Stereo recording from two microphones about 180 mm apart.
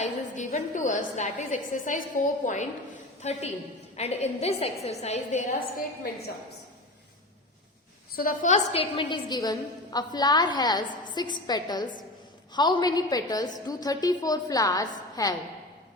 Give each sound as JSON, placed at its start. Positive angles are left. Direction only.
{"t": 0.0, "sound": "a woman's voice", "side_deg": 45}
{"t": 8.1, "sound": "a woman's voice", "side_deg": 50}